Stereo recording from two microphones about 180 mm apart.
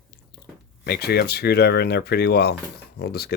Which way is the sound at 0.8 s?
60° left (ahead or behind).